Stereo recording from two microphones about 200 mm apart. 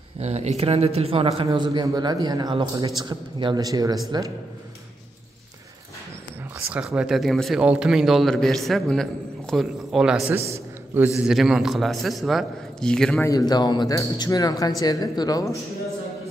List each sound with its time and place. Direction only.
0.2 s speech: 35° right (ahead or behind)
6.7 s a man's voice: 5° right (ahead or behind)
13.3 s speech: 20° left (ahead or behind)